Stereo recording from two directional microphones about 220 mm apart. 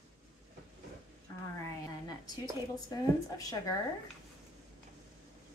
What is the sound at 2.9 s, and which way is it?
Speech, 15° left (ahead or behind).